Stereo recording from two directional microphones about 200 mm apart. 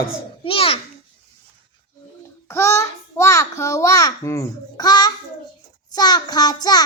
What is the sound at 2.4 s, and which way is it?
A child's voice, 15° left (ahead or behind).